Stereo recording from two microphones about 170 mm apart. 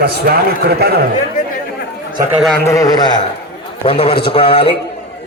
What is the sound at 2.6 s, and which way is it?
Speech, 20° left (ahead or behind).